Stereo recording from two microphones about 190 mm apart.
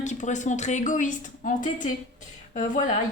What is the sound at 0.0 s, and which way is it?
A woman's voice, 40° left (ahead or behind).